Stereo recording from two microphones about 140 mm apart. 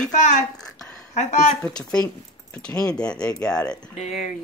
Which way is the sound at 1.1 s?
55° left (ahead or behind).